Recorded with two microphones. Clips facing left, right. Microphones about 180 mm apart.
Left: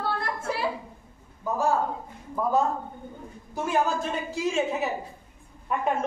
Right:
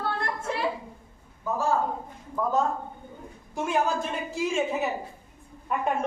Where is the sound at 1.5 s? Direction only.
15° left (ahead or behind).